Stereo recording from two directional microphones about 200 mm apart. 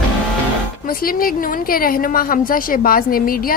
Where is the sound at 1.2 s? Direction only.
45° left (ahead or behind).